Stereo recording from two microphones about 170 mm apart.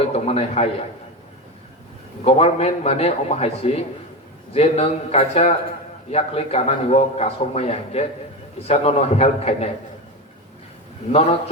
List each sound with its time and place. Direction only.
0.0 s a man's voice: 35° left (ahead or behind)
2.2 s a man's voice: 35° left (ahead or behind)
11.1 s a man's voice: 35° left (ahead or behind)